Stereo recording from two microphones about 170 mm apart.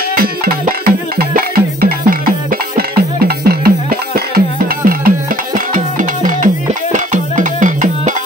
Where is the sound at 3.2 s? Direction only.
65° right (ahead or behind).